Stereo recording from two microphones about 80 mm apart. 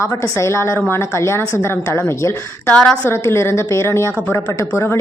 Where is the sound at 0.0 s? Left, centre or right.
Left.